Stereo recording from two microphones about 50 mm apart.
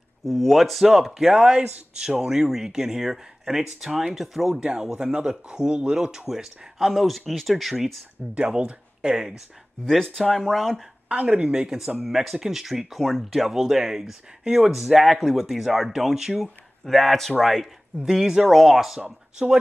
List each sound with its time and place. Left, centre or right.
0.2 s speech: centre
8.5 s speech: centre
9.8 s speech: centre
11.1 s speech: right; by 16.4 s centre
16.8 s speech: centre
18.0 s speech: centre
19.3 s speech: centre